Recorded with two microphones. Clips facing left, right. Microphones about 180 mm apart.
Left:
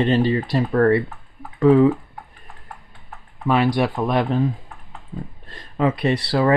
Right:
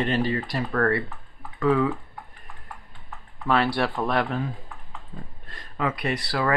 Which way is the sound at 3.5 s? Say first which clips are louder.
Left 4 dB; 15° left (ahead or behind).